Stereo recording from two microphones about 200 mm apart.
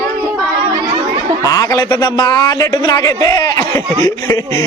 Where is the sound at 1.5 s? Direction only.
20° left (ahead or behind).